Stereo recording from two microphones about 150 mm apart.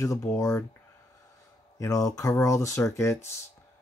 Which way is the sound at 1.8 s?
20° left (ahead or behind).